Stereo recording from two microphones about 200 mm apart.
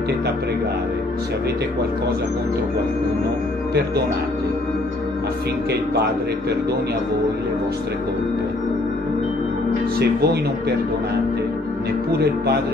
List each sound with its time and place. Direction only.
9.9 s speech: 55° right (ahead or behind)